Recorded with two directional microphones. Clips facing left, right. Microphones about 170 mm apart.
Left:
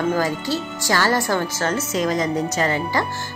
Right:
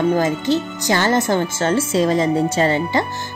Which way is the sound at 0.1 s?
20° right (ahead or behind).